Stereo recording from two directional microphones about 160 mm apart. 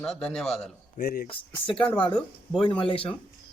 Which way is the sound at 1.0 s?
85° left.